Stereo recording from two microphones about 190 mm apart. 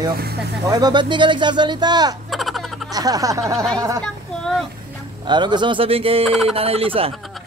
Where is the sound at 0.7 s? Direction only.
20° right (ahead or behind).